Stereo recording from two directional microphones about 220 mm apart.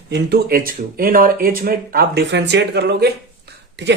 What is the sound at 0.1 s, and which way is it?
Speech, 45° right (ahead or behind).